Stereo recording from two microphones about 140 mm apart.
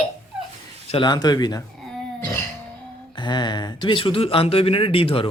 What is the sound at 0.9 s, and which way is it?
Speech, 30° left (ahead or behind).